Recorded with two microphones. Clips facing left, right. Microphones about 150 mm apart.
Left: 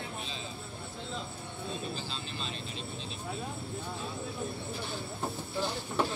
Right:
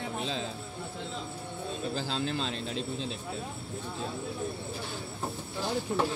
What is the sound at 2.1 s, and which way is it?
Speech, 90° right.